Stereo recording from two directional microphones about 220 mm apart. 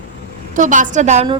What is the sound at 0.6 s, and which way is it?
Speech, 35° right (ahead or behind).